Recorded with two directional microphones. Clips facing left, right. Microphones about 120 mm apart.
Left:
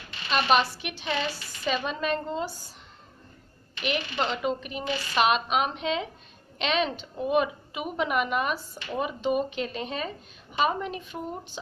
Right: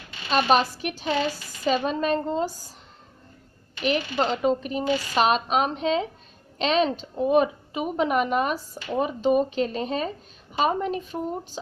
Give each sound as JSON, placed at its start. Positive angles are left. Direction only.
{"t": 0.3, "sound": "speech", "side_deg": -40}
{"t": 3.8, "sound": "speech", "side_deg": -35}